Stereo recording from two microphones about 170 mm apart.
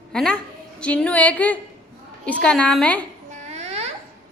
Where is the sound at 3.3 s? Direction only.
40° right (ahead or behind).